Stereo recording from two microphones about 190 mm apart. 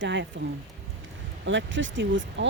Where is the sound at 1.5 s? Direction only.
75° right (ahead or behind).